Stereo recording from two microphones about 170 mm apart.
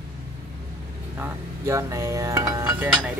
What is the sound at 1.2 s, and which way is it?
Speech, 15° right (ahead or behind).